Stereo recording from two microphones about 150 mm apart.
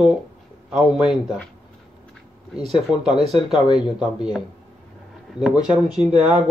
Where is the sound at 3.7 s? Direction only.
5° right (ahead or behind).